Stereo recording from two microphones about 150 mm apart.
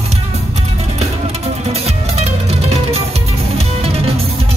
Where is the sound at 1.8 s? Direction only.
45° right (ahead or behind).